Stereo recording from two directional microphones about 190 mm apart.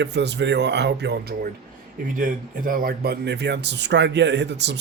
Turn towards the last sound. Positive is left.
turn(degrees=-65)  # may be behind; listen again after turning